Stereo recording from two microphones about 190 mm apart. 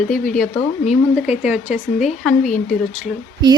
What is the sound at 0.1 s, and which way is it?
Speech, 45° left (ahead or behind).